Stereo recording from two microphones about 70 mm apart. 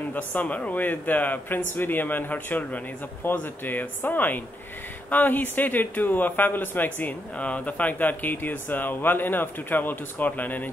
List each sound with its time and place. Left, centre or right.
0.1 s speech: left